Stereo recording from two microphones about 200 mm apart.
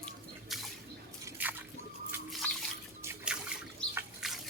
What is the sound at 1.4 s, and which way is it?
Splash, 10° right (ahead or behind).